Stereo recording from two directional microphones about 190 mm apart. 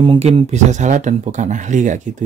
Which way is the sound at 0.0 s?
30° right (ahead or behind).